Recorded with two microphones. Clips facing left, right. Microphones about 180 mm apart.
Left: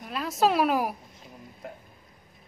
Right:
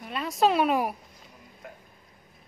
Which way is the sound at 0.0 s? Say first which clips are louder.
Even; centre (ahead or behind).